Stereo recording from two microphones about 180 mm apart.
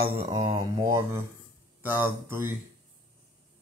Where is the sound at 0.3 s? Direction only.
20° right (ahead or behind).